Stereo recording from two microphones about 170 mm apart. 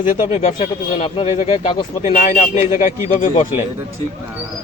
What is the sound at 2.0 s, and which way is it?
A man's voice, 50° left (ahead or behind).